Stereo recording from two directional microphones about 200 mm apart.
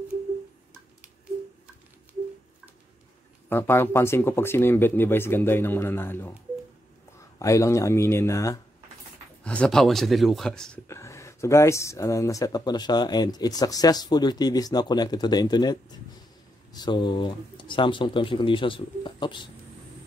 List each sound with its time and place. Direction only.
3.4 s speech: 10° left (ahead or behind)
7.3 s speech: 15° left (ahead or behind)
10.9 s speech: 15° left (ahead or behind)